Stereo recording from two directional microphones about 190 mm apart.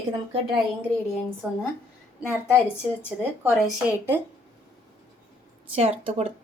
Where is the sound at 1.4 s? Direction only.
5° right (ahead or behind).